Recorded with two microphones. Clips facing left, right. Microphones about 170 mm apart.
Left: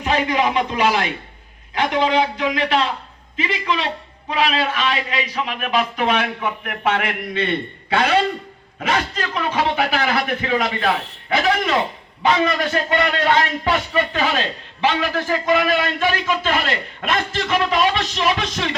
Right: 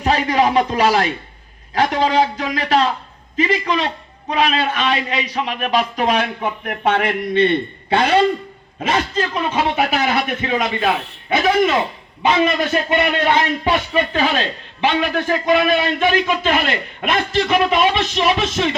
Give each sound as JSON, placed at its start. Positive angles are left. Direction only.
{"t": 0.0, "sound": "a man's voice", "side_deg": -40}